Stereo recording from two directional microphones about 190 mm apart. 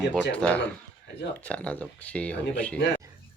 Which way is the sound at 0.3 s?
5° left (ahead or behind).